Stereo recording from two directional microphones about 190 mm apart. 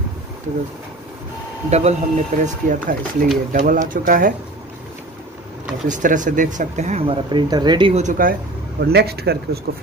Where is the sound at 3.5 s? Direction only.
45° right (ahead or behind).